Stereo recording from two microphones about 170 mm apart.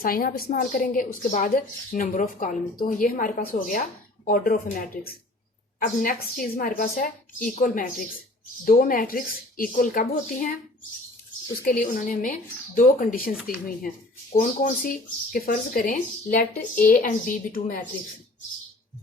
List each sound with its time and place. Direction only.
0.0 s a woman's voice: 60° left (ahead or behind)
11.6 s a woman's voice: 50° left (ahead or behind)
14.3 s speech: 55° left (ahead or behind)